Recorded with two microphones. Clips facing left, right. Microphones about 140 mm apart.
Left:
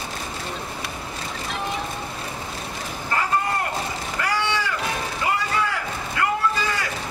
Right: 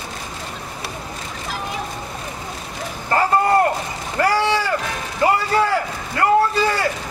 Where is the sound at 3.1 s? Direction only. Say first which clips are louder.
Right 8 dB; 40° right (ahead or behind).